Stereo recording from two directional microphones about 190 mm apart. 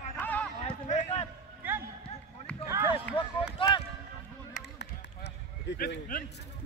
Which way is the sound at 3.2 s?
25° left (ahead or behind).